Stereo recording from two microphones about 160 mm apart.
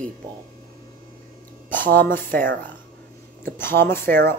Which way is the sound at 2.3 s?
60° right (ahead or behind).